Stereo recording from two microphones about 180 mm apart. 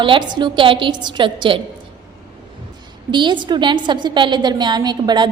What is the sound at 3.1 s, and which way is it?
A woman's voice, 25° right (ahead or behind).